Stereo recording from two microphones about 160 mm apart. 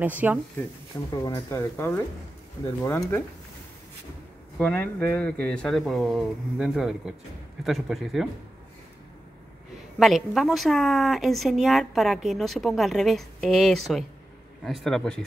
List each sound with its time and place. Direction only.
0.0 s speech: 10° right (ahead or behind)
1.1 s speech: 20° left (ahead or behind)
4.6 s a woman's voice: 10° left (ahead or behind)
9.9 s a woman's voice: centre (ahead or behind)